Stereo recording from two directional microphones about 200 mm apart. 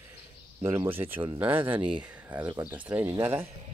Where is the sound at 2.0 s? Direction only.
10° right (ahead or behind).